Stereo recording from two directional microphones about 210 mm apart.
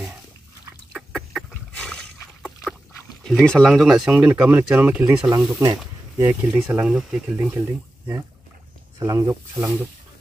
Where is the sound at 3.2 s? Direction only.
Centre (ahead or behind); by 6.3 s 15° right (ahead or behind).